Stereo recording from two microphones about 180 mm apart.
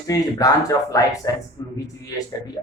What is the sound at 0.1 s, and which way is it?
Speech, 20° left (ahead or behind).